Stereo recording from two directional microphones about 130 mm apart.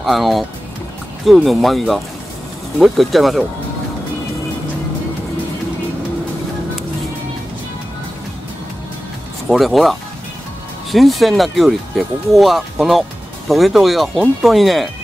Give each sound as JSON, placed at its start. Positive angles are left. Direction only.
{"t": 0.0, "sound": "speech", "side_deg": 0}
{"t": 9.5, "sound": "speech", "side_deg": 0}